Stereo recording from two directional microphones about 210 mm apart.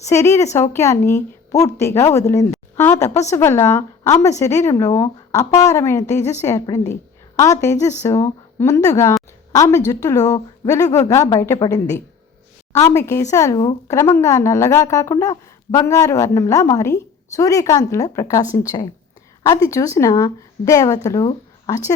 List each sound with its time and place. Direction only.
0.1 s a woman's voice: 15° left (ahead or behind)